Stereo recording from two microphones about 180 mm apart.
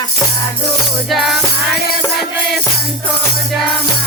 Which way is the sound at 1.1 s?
Centre (ahead or behind).